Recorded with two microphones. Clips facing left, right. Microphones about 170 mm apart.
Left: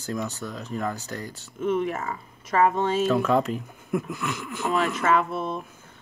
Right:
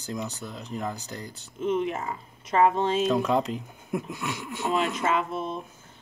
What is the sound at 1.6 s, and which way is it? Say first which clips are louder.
Music: left 1 dB; 50° left (ahead or behind).